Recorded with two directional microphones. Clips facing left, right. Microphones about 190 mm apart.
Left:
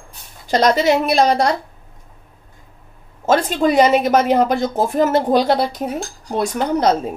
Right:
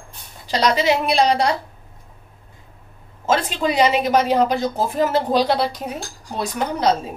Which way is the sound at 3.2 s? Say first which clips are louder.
Left 4 dB; 45° left (ahead or behind).